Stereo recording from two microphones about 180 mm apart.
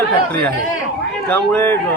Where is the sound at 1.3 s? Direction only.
10° left (ahead or behind).